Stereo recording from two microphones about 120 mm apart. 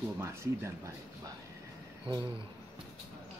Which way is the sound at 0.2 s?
25° right (ahead or behind).